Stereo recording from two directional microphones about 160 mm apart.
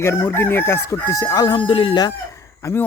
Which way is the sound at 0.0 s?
15° left (ahead or behind).